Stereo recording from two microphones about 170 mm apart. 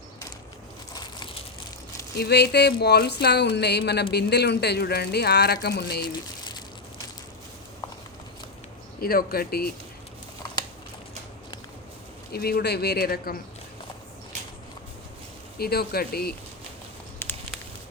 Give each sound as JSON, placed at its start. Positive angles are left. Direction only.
{"t": 2.1, "sound": "speech", "side_deg": 70}
{"t": 9.0, "sound": "speech", "side_deg": 60}
{"t": 12.3, "sound": "speech", "side_deg": 65}
{"t": 15.5, "sound": "speech", "side_deg": 65}